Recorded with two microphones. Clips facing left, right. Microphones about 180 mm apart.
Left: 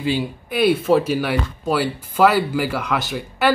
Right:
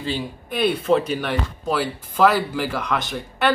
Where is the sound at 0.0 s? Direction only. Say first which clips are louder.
Left 5 dB; 5° left (ahead or behind).